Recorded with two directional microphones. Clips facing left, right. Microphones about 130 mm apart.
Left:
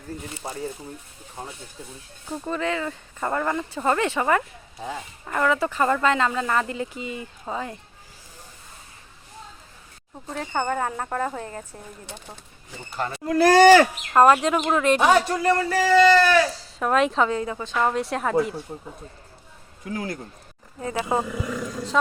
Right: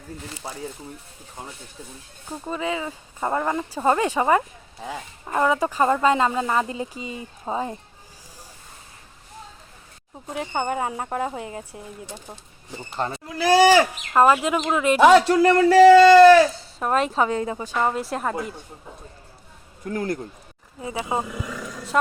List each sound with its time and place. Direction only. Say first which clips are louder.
2.3 s speech: left 1 dB; 10° right (ahead or behind); by 7.8 s 25° right (ahead or behind)
10.2 s speech: even; 20° right (ahead or behind)
13.0 s speech: right 2 dB; 25° right (ahead or behind)
13.4 s a woman's voice: left 2 dB; 5° right (ahead or behind)
15.0 s speech: right 10 dB; 75° right (ahead or behind)
16.8 s a woman's voice: left 1 dB; centre (ahead or behind)
17.2 s speech: right 1 dB; 30° right (ahead or behind)
17.6 s a woman's voice: even; 10° right (ahead or behind)
19.8 s speech: right 4 dB; 50° right (ahead or behind)
20.8 s speech: left 2 dB; 15° right (ahead or behind)